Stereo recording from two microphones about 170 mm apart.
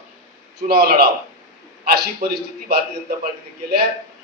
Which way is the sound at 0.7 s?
65° right (ahead or behind).